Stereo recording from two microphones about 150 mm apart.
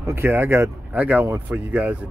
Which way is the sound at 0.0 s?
15° right (ahead or behind).